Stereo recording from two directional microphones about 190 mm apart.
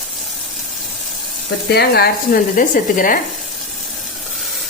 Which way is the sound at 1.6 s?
55° left (ahead or behind).